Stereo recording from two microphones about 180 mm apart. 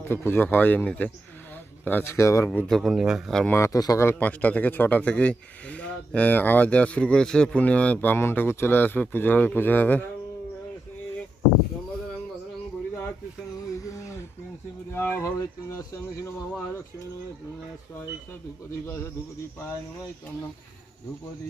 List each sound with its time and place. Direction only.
0.0 s speech: 10° left (ahead or behind)
2.5 s speech: centre (ahead or behind)
3.5 s speech: 15° left (ahead or behind)
13.7 s a sound: 15° left (ahead or behind)
14.9 s speech: 15° left (ahead or behind)